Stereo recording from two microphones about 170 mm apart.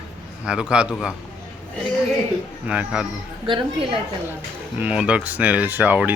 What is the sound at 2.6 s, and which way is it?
Speech, 5° right (ahead or behind).